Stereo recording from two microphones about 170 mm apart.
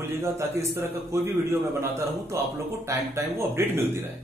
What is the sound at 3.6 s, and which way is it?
Speech, 15° right (ahead or behind).